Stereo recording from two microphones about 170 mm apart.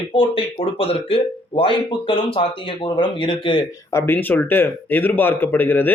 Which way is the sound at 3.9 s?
10° left (ahead or behind).